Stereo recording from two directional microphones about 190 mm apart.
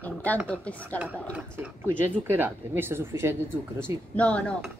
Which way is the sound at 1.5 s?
10° right (ahead or behind).